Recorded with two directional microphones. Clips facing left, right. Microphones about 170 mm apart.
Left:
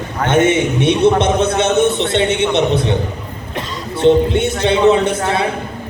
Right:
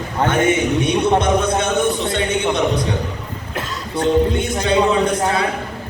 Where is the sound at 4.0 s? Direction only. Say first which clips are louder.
Left 5 dB; 25° left (ahead or behind).